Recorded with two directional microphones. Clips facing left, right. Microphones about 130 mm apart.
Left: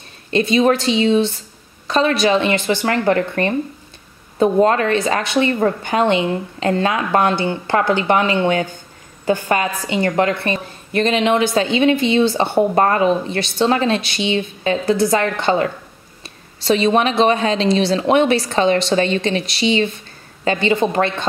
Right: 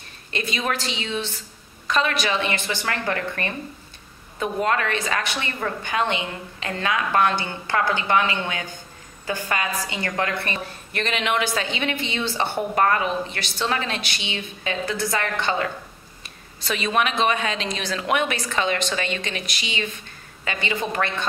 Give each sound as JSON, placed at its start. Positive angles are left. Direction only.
{"t": 0.3, "sound": "a woman's voice", "side_deg": 30}